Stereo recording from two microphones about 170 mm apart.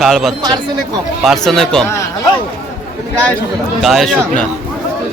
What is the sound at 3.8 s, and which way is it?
Speech, centre (ahead or behind).